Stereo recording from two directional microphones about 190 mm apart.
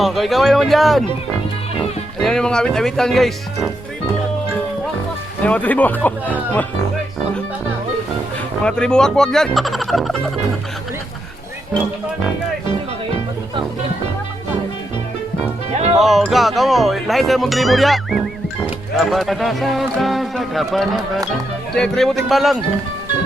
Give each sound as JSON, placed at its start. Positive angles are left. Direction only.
{"t": 0.0, "sound": "speech", "side_deg": 0}
{"t": 2.2, "sound": "speech", "side_deg": 5}
{"t": 5.4, "sound": "speech", "side_deg": 10}
{"t": 8.6, "sound": "speech", "side_deg": 5}
{"t": 16.0, "sound": "speech", "side_deg": 0}